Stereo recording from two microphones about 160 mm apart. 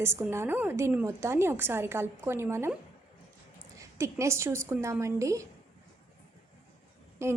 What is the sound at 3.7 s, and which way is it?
A woman's voice, 20° right (ahead or behind).